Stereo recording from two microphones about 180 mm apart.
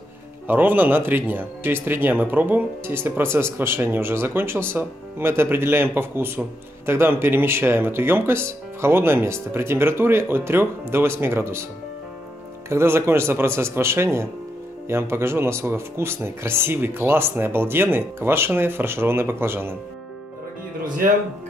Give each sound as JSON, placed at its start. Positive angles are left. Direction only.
{"t": 0.5, "sound": "speech", "side_deg": -10}
{"t": 12.6, "sound": "speech", "side_deg": -15}
{"t": 20.8, "sound": "speech", "side_deg": -50}